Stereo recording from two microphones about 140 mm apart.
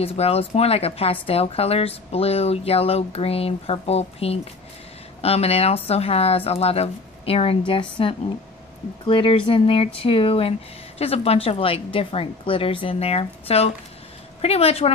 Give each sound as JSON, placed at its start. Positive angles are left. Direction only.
{"t": 0.0, "sound": "a woman's voice", "side_deg": 45}